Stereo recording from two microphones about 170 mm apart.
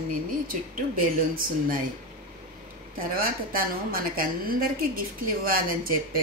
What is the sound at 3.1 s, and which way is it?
A woman's voice, 60° right (ahead or behind).